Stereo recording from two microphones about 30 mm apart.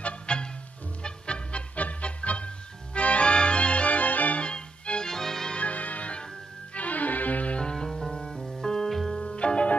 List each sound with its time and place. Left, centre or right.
0.3 s music: left
1.8 s music: left
2.0 s music: left
4.4 s music: left
5.0 s music: centre
5.6 s music: left
7.6 s music: centre
8.4 s music: centre
9.2 s music: left